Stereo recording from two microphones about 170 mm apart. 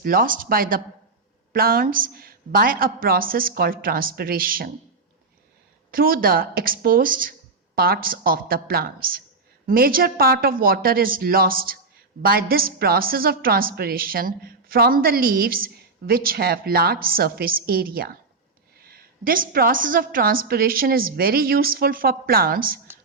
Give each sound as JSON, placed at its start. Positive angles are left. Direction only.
{"t": 0.0, "sound": "speech", "side_deg": -55}
{"t": 5.9, "sound": "speech", "side_deg": -60}